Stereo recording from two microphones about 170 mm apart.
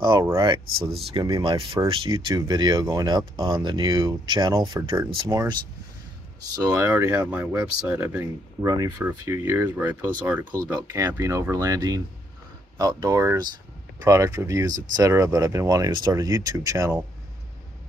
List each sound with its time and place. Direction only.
0.1 s speech: 25° right (ahead or behind)
6.7 s speech: 15° right (ahead or behind)